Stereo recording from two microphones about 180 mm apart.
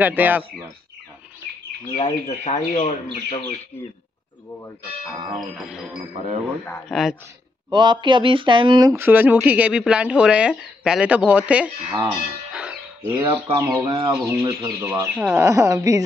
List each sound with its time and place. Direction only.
0.0 s speech: 10° right (ahead or behind)
2.2 s speech: 40° left (ahead or behind)
5.1 s music: 35° right (ahead or behind)
5.6 s speech: 5° right (ahead or behind)
6.1 s music: 35° right (ahead or behind)
6.9 s speech: centre (ahead or behind)
7.7 s speech: 25° right (ahead or behind); by 12.1 s 10° right (ahead or behind)
12.5 s music: 5° right (ahead or behind)
13.1 s speech: 15° right (ahead or behind)